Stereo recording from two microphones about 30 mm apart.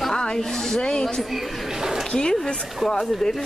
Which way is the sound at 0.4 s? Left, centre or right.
Centre.